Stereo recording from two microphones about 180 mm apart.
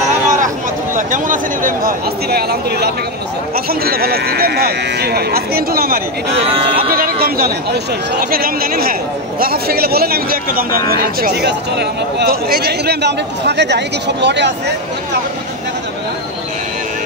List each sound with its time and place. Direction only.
0.9 s speech: 45° right (ahead or behind); by 14.5 s 70° right (ahead or behind)